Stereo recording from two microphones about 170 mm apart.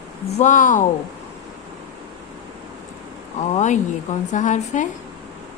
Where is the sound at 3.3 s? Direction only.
40° left (ahead or behind).